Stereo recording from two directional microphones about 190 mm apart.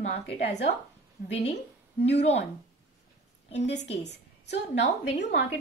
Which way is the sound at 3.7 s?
65° left (ahead or behind).